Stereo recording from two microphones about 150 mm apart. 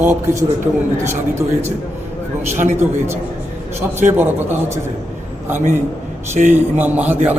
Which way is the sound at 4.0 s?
15° right (ahead or behind).